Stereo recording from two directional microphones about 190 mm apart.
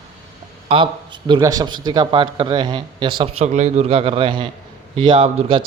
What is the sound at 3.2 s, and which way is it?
A man's voice, 35° right (ahead or behind).